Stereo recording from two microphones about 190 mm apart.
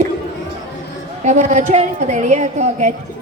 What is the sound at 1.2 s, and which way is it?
A woman's voice, 40° right (ahead or behind).